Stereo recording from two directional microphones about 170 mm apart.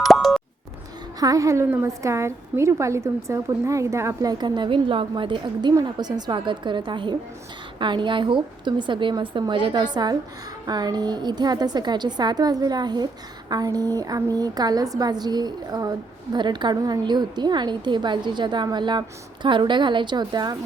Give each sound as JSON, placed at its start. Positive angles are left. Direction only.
{"t": 0.0, "sound": "plop", "side_deg": 0}
{"t": 1.2, "sound": "a woman's voice", "side_deg": -20}